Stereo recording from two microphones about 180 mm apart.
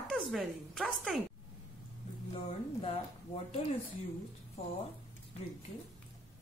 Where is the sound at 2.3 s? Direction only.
30° left (ahead or behind).